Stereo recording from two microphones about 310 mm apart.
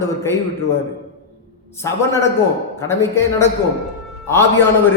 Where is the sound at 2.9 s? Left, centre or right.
Centre.